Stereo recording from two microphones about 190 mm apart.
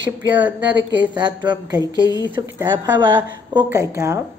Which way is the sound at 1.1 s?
25° right (ahead or behind).